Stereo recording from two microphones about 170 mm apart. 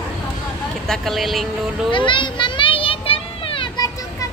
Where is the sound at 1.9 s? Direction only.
30° left (ahead or behind).